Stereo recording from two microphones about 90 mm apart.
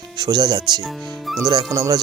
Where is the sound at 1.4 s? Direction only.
50° right (ahead or behind).